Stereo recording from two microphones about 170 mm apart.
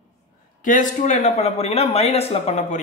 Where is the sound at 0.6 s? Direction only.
50° left (ahead or behind).